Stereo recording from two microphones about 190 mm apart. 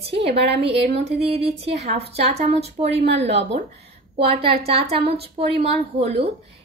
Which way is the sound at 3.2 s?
35° right (ahead or behind).